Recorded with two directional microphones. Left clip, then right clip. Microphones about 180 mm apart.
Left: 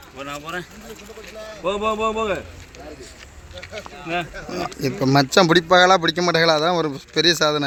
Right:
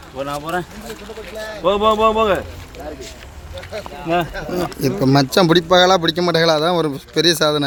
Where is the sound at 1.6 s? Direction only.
15° left (ahead or behind).